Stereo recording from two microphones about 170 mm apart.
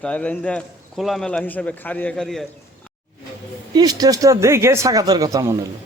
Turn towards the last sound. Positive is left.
turn(degrees=-20)  # may be behind; listen again after turning